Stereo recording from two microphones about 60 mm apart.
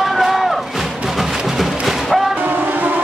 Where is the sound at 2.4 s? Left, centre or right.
Right.